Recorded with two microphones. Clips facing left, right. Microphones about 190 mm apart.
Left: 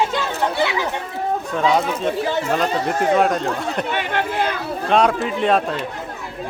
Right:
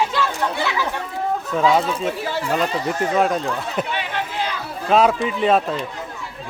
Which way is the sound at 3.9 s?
55° left (ahead or behind).